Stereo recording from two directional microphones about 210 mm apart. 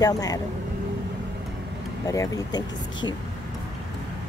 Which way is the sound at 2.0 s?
15° left (ahead or behind).